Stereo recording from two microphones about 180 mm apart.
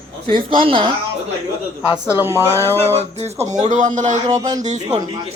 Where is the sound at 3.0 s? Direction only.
35° right (ahead or behind).